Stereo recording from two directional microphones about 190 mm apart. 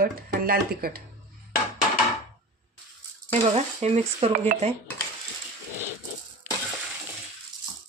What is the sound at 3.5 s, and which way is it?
Speech, 35° right (ahead or behind).